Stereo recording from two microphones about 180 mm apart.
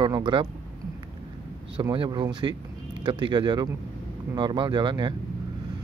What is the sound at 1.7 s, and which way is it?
Speech, 25° right (ahead or behind).